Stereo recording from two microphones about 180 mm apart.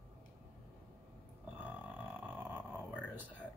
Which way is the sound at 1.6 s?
10° right (ahead or behind).